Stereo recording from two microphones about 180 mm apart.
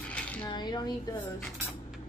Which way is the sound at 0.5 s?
25° left (ahead or behind).